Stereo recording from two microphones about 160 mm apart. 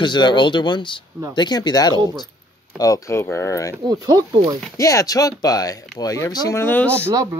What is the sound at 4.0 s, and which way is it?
Speech, 25° right (ahead or behind).